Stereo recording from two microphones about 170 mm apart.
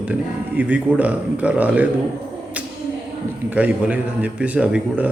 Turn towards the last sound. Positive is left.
turn(degrees=-10)  # may be behind; listen again after turning